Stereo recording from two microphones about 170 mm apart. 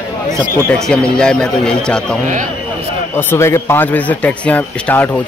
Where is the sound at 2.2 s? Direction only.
45° right (ahead or behind).